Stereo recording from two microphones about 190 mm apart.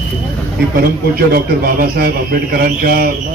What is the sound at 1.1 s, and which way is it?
A man's voice, 50° right (ahead or behind).